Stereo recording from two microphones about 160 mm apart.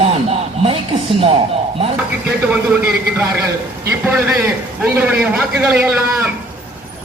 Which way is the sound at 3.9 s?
10° right (ahead or behind).